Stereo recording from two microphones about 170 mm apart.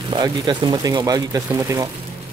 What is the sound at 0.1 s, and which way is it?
Speech, 30° right (ahead or behind).